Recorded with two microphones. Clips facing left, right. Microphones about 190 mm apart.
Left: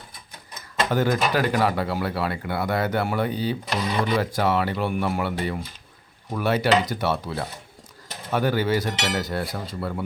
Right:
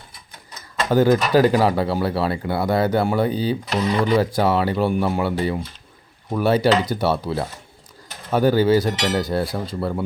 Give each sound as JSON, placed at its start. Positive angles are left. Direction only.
{"t": 0.9, "sound": "speech", "side_deg": -35}